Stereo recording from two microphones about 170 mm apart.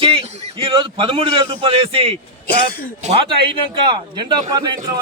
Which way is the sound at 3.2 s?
30° right (ahead or behind).